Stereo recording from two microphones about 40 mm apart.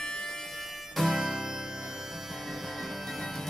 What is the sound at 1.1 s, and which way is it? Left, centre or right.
Harmonica, centre.